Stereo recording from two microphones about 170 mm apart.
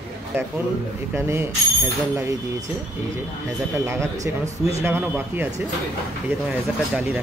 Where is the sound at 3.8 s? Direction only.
15° right (ahead or behind).